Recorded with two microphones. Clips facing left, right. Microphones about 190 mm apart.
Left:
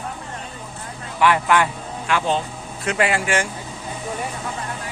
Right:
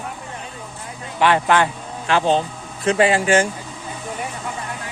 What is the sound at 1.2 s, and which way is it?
A man's voice, 30° right (ahead or behind).